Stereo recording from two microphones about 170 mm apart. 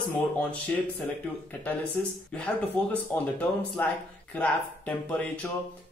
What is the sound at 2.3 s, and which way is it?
Speech, 10° left (ahead or behind).